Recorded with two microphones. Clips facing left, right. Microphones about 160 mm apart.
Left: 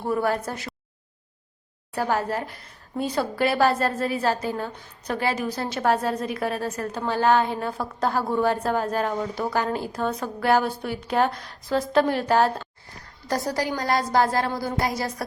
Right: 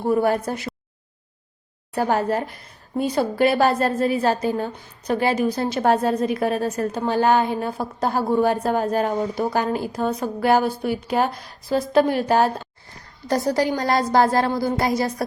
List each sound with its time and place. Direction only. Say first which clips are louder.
0.0 s a woman's voice: right 5 dB; 15° right (ahead or behind)
2.0 s a woman's voice: right 4 dB; 25° right (ahead or behind)